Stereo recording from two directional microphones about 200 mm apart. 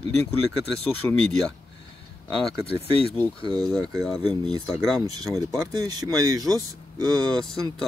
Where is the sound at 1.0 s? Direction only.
10° left (ahead or behind).